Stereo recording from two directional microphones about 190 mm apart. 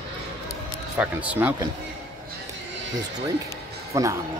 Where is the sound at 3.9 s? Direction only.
15° right (ahead or behind).